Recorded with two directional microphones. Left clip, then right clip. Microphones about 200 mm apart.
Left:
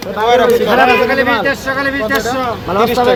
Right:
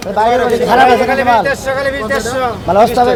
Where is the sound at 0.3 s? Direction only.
30° left (ahead or behind).